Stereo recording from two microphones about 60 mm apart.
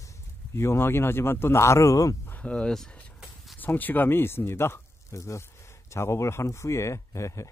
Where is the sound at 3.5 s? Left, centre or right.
Left.